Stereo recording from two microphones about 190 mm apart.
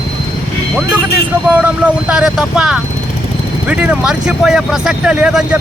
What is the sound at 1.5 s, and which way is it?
Speech, 10° right (ahead or behind).